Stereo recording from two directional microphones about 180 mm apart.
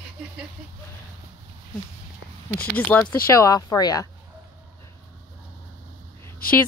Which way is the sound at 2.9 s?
10° left (ahead or behind).